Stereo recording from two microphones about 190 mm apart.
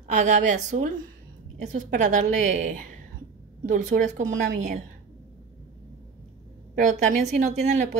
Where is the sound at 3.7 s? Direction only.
40° right (ahead or behind).